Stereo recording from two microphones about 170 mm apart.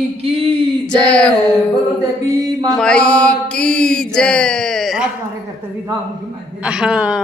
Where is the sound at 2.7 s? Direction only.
5° left (ahead or behind).